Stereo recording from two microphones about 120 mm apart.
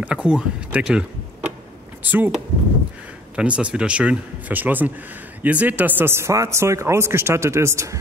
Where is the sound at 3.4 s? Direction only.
10° right (ahead or behind).